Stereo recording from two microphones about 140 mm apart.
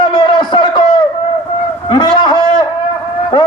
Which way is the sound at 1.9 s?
35° left (ahead or behind).